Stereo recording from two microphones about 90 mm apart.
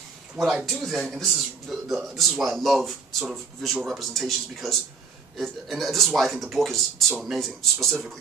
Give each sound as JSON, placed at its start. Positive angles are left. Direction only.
{"t": 0.7, "sound": "a man's voice", "side_deg": 0}